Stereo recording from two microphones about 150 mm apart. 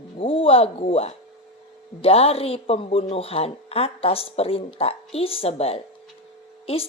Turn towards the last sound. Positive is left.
turn(degrees=40)  # may be behind; listen again after turning